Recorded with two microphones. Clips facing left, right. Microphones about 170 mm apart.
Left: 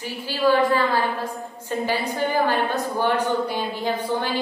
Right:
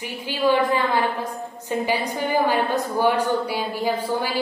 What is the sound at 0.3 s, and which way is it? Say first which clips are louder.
Speech: left 1 dB; 20° right (ahead or behind).